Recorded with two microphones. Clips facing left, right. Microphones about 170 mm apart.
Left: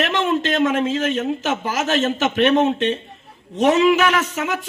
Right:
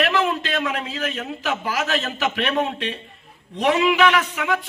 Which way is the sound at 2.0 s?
20° left (ahead or behind).